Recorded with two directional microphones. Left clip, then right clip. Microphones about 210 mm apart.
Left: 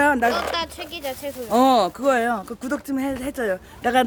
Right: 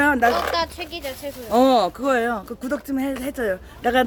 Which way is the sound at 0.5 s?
20° left (ahead or behind).